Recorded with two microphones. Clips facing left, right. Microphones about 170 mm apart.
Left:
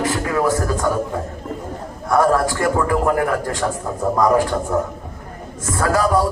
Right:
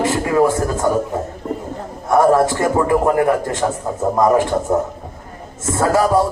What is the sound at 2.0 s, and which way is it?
A man's voice, 20° right (ahead or behind).